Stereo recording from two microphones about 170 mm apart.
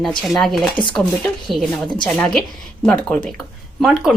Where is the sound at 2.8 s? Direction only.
10° left (ahead or behind).